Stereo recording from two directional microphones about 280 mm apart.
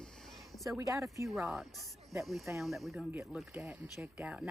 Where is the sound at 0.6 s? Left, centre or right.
Centre.